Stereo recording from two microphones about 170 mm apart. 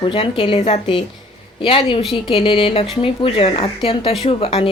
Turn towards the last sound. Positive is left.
turn(degrees=35)  # may be behind; listen again after turning